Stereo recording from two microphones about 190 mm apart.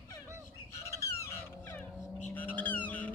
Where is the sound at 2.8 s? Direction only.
5° left (ahead or behind).